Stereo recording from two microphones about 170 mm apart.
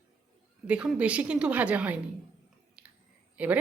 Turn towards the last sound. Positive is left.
turn(degrees=-10)  # may be behind; listen again after turning